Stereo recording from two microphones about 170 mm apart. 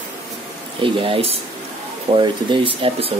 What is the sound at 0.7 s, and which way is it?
Speech, 30° right (ahead or behind).